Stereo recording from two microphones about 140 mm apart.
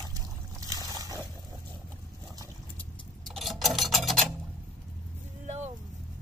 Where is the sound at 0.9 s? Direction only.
25° right (ahead or behind).